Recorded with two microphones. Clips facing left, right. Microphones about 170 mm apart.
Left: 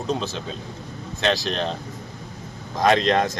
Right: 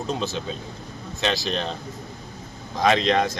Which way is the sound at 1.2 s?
Centre (ahead or behind).